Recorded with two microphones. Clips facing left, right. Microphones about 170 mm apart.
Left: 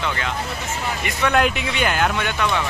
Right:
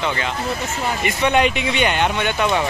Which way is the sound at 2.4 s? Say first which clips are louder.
Right 4 dB; 30° right (ahead or behind).